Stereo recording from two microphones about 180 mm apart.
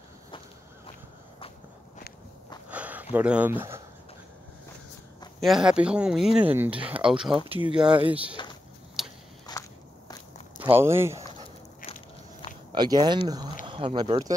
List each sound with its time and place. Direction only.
2.7 s a sound: 10° right (ahead or behind)
5.4 s speech: centre (ahead or behind)
7.3 s speech: 30° right (ahead or behind)
7.7 s speech: 5° right (ahead or behind)
9.0 s biting: centre (ahead or behind)
9.5 s walk: 20° left (ahead or behind)
10.6 s speech: 15° right (ahead or behind)
12.7 s speech: 25° right (ahead or behind)